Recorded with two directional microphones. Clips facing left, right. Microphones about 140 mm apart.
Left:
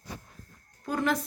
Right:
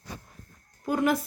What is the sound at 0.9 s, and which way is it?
Speech, 10° right (ahead or behind).